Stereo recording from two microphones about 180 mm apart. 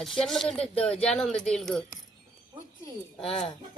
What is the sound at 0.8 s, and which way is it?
Speech, 5° left (ahead or behind).